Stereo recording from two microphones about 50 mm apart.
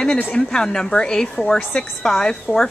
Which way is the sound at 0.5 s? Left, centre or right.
Centre.